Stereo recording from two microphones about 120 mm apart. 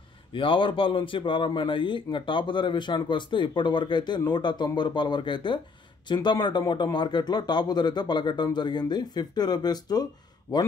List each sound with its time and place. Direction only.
0.3 s a man's voice: 45° left (ahead or behind); by 10.6 s 30° left (ahead or behind)